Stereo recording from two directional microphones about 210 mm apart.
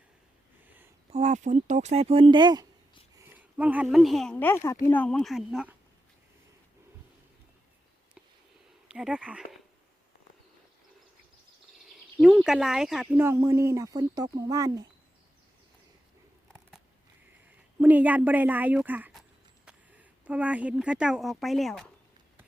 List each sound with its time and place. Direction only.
1.1 s speech: 35° right (ahead or behind)
3.2 s speech: 5° right (ahead or behind)
8.9 s speech: 5° right (ahead or behind)
12.2 s speech: centre (ahead or behind)
17.7 s a woman's voice: 10° right (ahead or behind)